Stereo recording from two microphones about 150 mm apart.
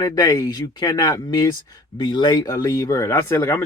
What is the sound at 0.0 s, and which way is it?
Speech, 25° left (ahead or behind).